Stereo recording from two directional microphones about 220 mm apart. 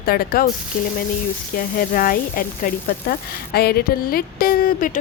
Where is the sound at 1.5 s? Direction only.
40° left (ahead or behind).